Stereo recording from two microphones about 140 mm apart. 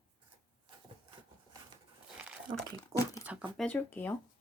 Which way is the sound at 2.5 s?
30° right (ahead or behind).